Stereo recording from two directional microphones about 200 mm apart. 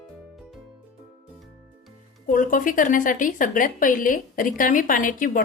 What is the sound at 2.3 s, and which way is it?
Speech, 40° left (ahead or behind).